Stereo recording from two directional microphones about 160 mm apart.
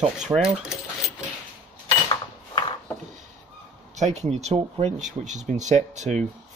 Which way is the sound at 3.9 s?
45° right (ahead or behind).